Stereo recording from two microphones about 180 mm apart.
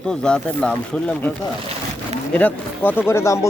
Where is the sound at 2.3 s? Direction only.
10° left (ahead or behind).